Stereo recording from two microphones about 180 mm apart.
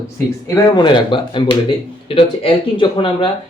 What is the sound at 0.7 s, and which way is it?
A woman's voice, 25° left (ahead or behind).